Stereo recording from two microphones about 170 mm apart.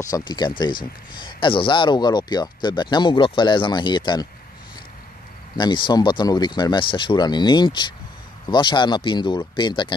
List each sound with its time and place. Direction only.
0.0 s speech: 25° left (ahead or behind)
5.6 s speech: 25° left (ahead or behind)